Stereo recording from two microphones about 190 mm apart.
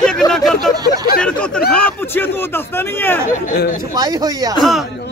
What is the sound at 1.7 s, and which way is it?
A man's voice, 10° left (ahead or behind).